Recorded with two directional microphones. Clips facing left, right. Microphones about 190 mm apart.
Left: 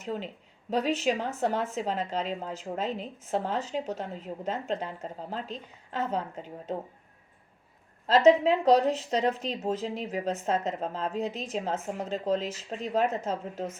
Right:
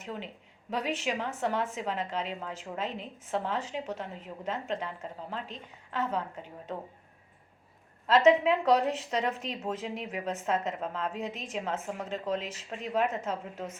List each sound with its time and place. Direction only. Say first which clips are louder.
0.0 s a woman's voice: left 5 dB; 35° left (ahead or behind)
8.0 s speech: left 2 dB; 35° left (ahead or behind)